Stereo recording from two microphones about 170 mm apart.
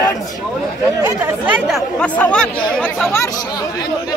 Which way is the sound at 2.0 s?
10° left (ahead or behind).